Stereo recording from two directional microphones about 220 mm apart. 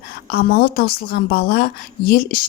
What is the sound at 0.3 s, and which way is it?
Speech, 45° left (ahead or behind).